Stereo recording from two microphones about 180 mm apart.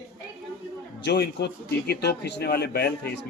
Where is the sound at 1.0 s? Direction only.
65° left (ahead or behind).